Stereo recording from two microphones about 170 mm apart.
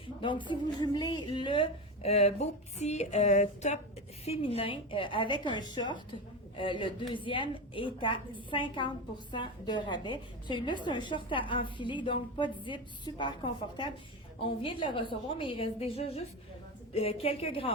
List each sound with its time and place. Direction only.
0.2 s a woman's voice: 30° left (ahead or behind)